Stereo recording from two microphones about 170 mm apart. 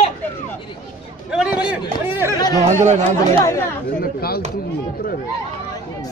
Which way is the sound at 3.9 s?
65° left (ahead or behind).